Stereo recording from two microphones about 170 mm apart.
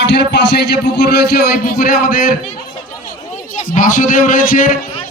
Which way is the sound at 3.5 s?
50° left (ahead or behind).